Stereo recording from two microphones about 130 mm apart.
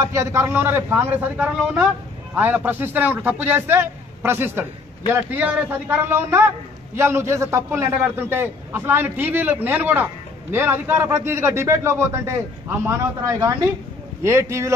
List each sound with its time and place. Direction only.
0.0 s a man's voice: 20° right (ahead or behind)